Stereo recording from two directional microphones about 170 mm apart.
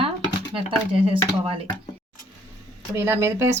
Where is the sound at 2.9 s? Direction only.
15° right (ahead or behind).